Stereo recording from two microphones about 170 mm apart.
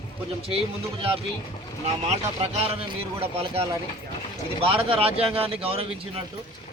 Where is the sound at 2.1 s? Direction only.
40° right (ahead or behind).